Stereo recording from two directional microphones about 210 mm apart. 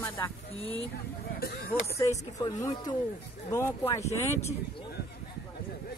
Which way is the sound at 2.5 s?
15° left (ahead or behind).